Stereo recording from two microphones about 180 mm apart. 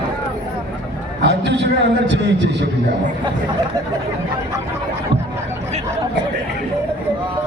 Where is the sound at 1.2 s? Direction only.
75° right (ahead or behind).